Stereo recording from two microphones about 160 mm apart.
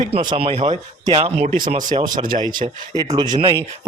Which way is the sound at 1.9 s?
25° right (ahead or behind).